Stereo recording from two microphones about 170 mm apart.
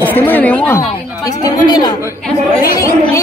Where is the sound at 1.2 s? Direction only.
25° left (ahead or behind).